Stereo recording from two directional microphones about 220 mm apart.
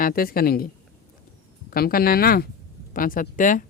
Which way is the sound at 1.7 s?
40° left (ahead or behind).